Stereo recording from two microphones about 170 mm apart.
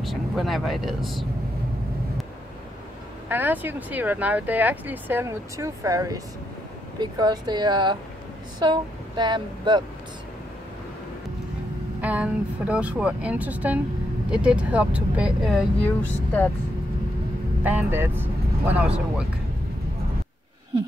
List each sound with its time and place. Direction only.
0.0 s speech: centre (ahead or behind)
3.3 s speech: 10° right (ahead or behind); by 9.8 s 25° right (ahead or behind)
12.0 s speech: 10° right (ahead or behind); by 16.4 s 10° left (ahead or behind)
17.6 s speech: 10° right (ahead or behind)